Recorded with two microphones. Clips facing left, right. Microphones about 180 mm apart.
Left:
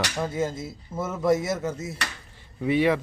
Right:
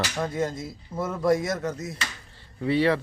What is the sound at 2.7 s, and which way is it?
Speech, 15° left (ahead or behind).